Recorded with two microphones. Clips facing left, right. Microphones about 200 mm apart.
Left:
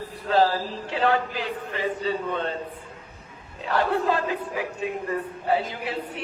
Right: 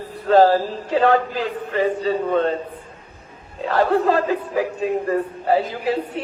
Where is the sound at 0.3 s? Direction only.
45° right (ahead or behind).